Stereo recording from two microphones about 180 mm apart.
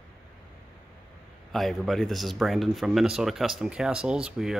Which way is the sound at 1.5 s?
Centre (ahead or behind).